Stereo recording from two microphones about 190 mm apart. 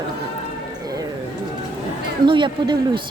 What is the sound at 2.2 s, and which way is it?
Speech, 25° right (ahead or behind).